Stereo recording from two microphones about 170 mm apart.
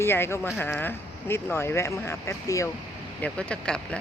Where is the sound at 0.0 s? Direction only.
15° left (ahead or behind).